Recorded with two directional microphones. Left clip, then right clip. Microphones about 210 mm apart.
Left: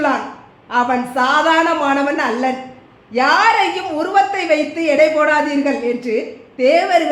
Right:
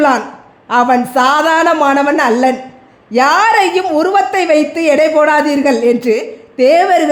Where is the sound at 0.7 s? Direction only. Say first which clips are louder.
Right 6 dB; 50° right (ahead or behind).